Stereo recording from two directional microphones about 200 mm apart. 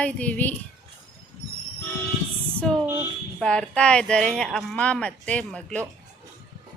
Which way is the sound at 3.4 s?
5° left (ahead or behind).